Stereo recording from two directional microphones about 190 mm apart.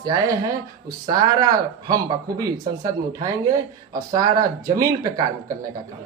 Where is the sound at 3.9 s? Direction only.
20° right (ahead or behind).